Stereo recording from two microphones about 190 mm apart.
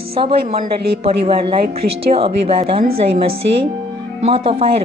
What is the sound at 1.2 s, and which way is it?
Speech, 30° right (ahead or behind).